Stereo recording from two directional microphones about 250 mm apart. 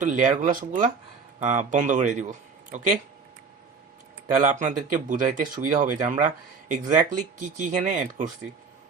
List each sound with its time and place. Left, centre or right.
0.0 s speech: right
4.4 s speech: right